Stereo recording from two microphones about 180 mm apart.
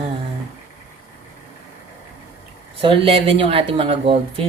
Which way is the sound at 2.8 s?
30° right (ahead or behind).